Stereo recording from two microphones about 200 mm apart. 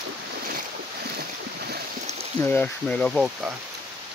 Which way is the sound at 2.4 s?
10° left (ahead or behind).